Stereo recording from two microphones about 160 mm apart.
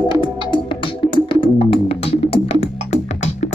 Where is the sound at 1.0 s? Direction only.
30° left (ahead or behind).